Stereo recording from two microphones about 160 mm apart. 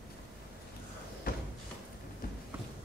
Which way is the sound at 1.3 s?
65° left (ahead or behind).